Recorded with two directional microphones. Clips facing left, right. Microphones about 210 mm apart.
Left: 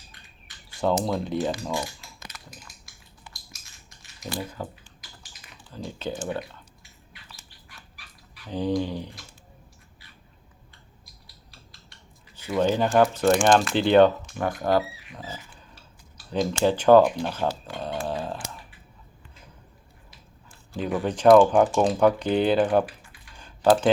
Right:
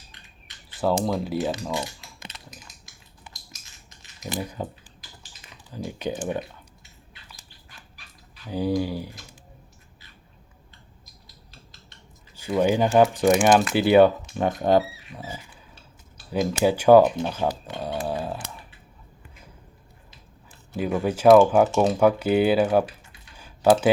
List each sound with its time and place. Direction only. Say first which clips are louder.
1.0 s speech: right 1 dB; 5° right (ahead or behind)
1.7 s typing: even; 20° right (ahead or behind)
3.8 s typing: right 1 dB; 20° right (ahead or behind)
5.7 s speech: right 3 dB; 15° right (ahead or behind)
8.4 s speech: right 1 dB; 10° right (ahead or behind)
12.5 s speech: right 2 dB; 10° right (ahead or behind)
14.3 s speech: right 3 dB; 20° right (ahead or behind)
15.1 s speech: right 3 dB; 10° right (ahead or behind)
17.7 s dog: right 1 dB; 10° right (ahead or behind)
21.0 s speech: right 1 dB; 10° right (ahead or behind)
22.9 s a sound: even; 25° right (ahead or behind)
23.4 s typing: right 1 dB; 10° right (ahead or behind)